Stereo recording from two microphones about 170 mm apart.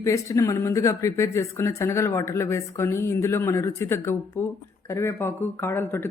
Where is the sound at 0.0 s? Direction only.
20° left (ahead or behind).